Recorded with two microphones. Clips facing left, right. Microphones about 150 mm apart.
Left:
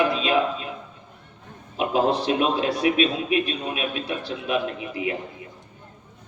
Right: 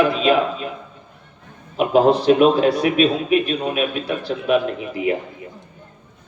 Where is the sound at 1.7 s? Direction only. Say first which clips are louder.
Right 7 dB; 55° right (ahead or behind).